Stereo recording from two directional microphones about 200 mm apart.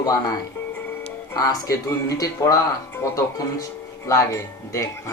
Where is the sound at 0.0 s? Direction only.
15° left (ahead or behind).